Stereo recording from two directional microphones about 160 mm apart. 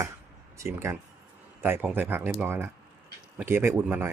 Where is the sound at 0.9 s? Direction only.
20° right (ahead or behind).